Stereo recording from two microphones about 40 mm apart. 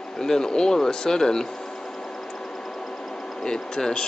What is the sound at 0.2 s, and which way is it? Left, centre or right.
Speech, centre.